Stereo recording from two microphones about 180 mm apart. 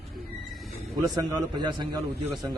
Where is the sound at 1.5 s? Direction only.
25° right (ahead or behind).